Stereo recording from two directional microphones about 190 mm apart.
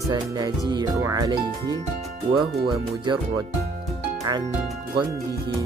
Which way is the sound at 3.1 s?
25° right (ahead or behind).